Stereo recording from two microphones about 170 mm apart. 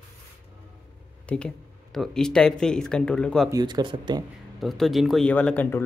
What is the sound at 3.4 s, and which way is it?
Speech, 20° right (ahead or behind).